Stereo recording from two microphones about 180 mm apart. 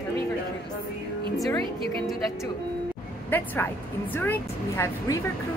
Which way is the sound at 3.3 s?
10° left (ahead or behind).